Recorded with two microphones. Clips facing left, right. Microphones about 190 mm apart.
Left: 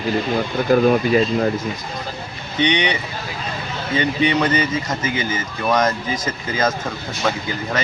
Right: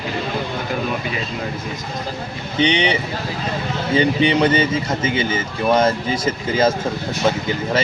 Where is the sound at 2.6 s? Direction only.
30° right (ahead or behind).